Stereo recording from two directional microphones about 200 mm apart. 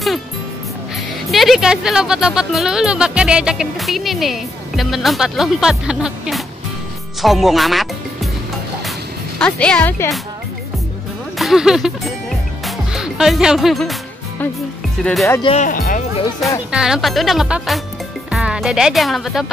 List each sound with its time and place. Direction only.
1.3 s speech: centre (ahead or behind)
9.4 s speech: 5° left (ahead or behind)
11.3 s music: centre (ahead or behind)
15.0 s speech: 10° left (ahead or behind)
15.4 s speech: 35° left (ahead or behind)
16.7 s speech: 5° right (ahead or behind)